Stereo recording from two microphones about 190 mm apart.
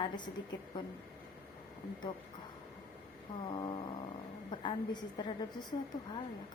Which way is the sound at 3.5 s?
25° left (ahead or behind).